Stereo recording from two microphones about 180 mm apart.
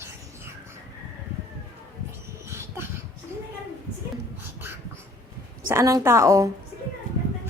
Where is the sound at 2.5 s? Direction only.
15° right (ahead or behind).